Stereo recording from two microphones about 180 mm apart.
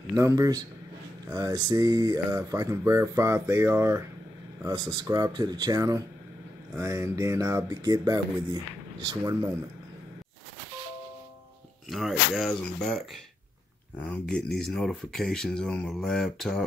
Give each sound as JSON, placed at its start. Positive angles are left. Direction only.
{"t": 0.1, "sound": "speech", "side_deg": -15}
{"t": 11.9, "sound": "speech", "side_deg": 0}